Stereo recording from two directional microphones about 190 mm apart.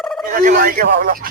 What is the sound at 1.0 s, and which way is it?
Speech, 45° right (ahead or behind).